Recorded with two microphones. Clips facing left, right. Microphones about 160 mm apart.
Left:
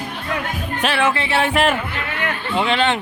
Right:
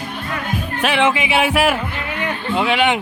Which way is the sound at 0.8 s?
15° right (ahead or behind).